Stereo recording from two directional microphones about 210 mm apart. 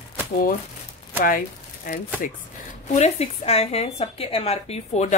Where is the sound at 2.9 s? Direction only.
30° left (ahead or behind).